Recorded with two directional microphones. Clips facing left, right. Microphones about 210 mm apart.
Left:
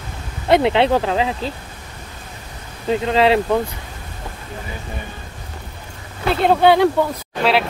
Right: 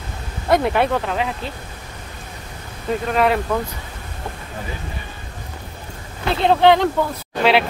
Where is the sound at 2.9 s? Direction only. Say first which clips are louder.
Left 3 dB; 25° left (ahead or behind).